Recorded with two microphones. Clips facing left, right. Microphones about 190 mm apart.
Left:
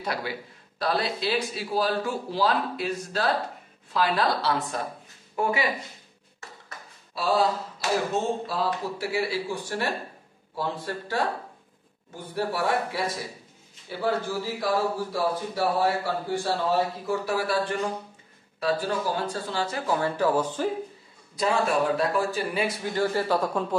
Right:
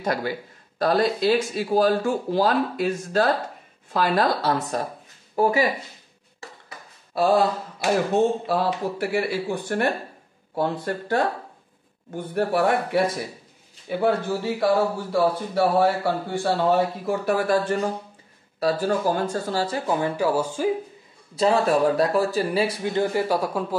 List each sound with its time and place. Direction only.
0.0 s a man's voice: 45° right (ahead or behind)
7.2 s speech: 50° right (ahead or behind)
19.9 s speech: 15° right (ahead or behind)
21.4 s speech: 35° right (ahead or behind)
22.9 s speech: 15° right (ahead or behind)